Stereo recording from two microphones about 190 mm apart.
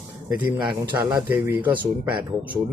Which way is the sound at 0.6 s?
25° right (ahead or behind).